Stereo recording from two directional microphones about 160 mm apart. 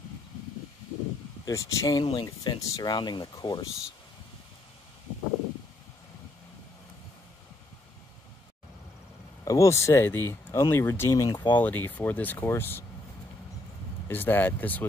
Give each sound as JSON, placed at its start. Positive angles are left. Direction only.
{"t": 1.4, "sound": "speech", "side_deg": 20}
{"t": 9.4, "sound": "speech", "side_deg": 20}
{"t": 11.5, "sound": "speech", "side_deg": 10}
{"t": 14.0, "sound": "speech", "side_deg": 10}